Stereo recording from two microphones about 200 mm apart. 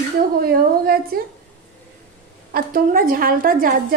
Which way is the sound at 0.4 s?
50° right (ahead or behind).